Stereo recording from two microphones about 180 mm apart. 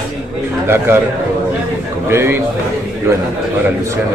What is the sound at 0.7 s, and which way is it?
Speech, 15° right (ahead or behind).